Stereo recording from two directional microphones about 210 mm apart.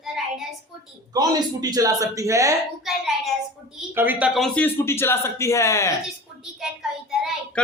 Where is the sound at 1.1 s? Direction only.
20° right (ahead or behind).